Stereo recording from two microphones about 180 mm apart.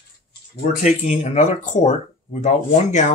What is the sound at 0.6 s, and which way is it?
Speech, 45° left (ahead or behind).